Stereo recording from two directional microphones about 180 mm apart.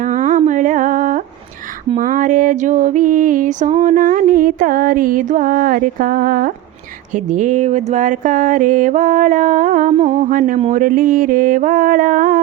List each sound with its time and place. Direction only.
0.0 s music: 45° right (ahead or behind)